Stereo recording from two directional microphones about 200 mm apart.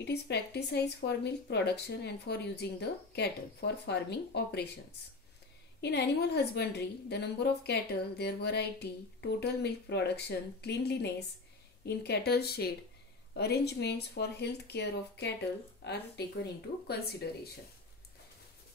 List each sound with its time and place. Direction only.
0.0 s a woman's voice: 55° left (ahead or behind)
5.8 s a woman's voice: 55° left (ahead or behind)